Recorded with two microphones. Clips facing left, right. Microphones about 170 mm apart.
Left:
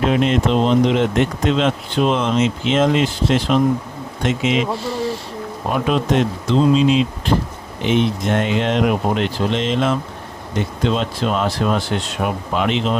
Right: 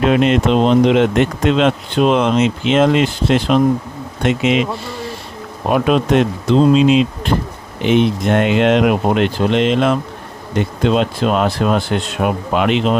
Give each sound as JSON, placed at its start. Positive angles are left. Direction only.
{"t": 0.0, "sound": "speech", "side_deg": -70}